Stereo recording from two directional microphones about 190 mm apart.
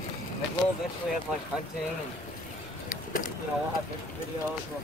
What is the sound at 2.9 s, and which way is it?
Vehicle, 50° left (ahead or behind).